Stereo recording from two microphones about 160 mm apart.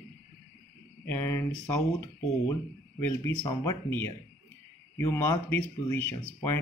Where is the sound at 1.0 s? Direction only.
15° left (ahead or behind).